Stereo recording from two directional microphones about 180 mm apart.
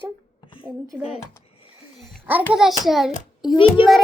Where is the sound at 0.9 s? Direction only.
5° right (ahead or behind).